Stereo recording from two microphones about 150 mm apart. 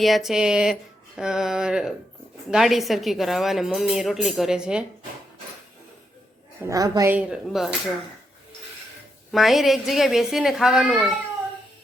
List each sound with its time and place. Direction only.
0.0 s a woman's voice: centre (ahead or behind)
6.7 s a woman's voice: 25° right (ahead or behind)
7.1 s a woman's voice: 5° right (ahead or behind)
9.3 s a woman's voice: centre (ahead or behind)